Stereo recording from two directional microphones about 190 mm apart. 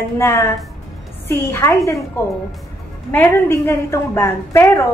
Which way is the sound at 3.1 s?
10° left (ahead or behind).